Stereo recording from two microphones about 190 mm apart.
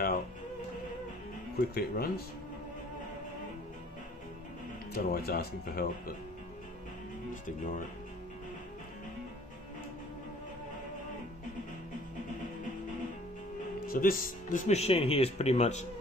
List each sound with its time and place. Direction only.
1.7 s speech: 50° left (ahead or behind)
4.9 s speech: 55° left (ahead or behind)
7.4 s speech: 45° left (ahead or behind)
13.8 s speech: 50° left (ahead or behind)